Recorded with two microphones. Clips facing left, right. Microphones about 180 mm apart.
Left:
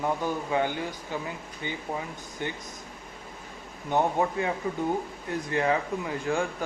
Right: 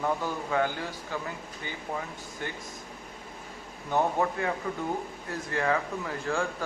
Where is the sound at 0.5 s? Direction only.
15° left (ahead or behind).